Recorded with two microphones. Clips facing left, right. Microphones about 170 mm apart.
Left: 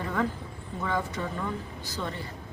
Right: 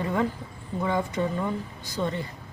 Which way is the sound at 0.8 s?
20° right (ahead or behind).